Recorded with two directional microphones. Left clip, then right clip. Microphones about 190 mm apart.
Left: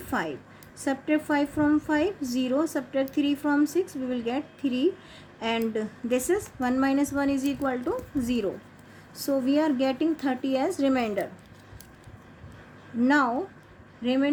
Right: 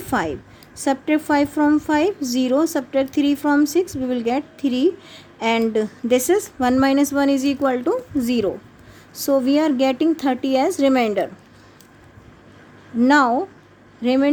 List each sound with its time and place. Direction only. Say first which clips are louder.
0.0 s a woman's voice: right 8 dB; 45° right (ahead or behind)
13.0 s a woman's voice: right 8 dB; 45° right (ahead or behind)